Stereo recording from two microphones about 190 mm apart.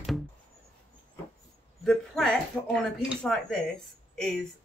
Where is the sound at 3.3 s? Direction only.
5° left (ahead or behind).